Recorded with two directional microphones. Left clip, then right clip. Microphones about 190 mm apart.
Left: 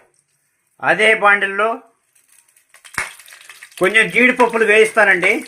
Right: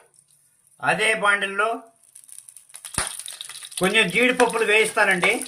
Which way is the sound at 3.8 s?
40° left (ahead or behind).